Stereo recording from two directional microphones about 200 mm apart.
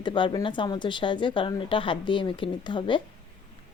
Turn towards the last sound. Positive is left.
turn(degrees=25)  # may be behind; listen again after turning